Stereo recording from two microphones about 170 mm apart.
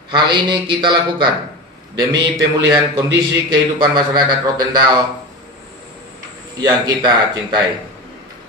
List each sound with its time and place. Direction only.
0.1 s a man's voice: 25° right (ahead or behind)
6.6 s a man's voice: 25° right (ahead or behind)